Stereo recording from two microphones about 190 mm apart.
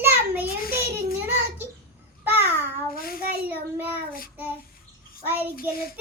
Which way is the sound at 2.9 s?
50° left (ahead or behind).